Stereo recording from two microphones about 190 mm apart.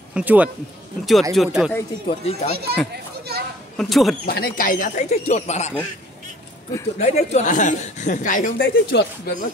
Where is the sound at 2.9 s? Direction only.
55° right (ahead or behind).